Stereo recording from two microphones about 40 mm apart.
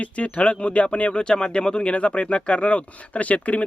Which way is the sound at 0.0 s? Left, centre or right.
Left.